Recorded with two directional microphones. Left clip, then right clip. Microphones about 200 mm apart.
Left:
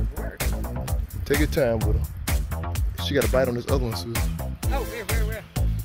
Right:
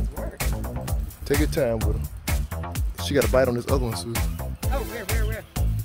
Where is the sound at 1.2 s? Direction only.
10° left (ahead or behind).